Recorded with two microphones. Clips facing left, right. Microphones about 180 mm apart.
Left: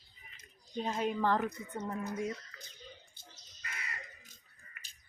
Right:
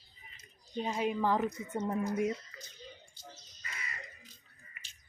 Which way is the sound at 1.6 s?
25° right (ahead or behind).